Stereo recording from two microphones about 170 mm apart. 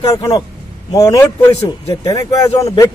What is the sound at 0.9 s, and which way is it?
A man's voice, 20° left (ahead or behind).